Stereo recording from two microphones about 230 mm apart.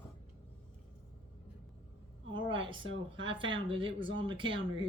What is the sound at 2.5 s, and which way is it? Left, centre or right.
Speech, right.